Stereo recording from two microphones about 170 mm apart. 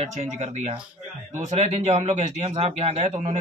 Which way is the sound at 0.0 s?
40° right (ahead or behind).